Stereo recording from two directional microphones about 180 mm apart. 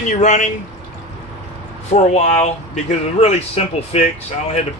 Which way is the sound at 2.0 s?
40° left (ahead or behind).